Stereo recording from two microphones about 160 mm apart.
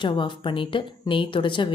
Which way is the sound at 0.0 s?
30° left (ahead or behind).